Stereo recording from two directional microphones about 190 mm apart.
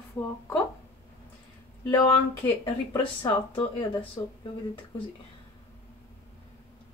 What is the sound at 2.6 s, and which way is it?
Speech, 25° left (ahead or behind).